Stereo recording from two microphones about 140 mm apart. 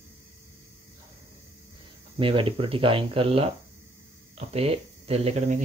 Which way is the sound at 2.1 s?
40° right (ahead or behind).